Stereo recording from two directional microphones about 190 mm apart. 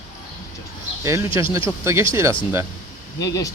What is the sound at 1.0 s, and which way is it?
Speech, 15° right (ahead or behind).